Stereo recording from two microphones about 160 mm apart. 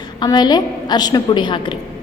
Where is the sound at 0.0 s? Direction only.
25° left (ahead or behind).